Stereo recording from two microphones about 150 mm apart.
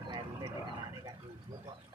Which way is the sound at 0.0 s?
30° right (ahead or behind).